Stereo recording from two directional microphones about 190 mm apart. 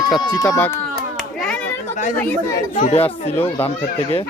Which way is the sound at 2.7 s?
35° left (ahead or behind).